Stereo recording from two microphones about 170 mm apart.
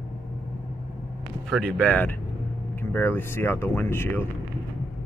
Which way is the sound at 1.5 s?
5° left (ahead or behind).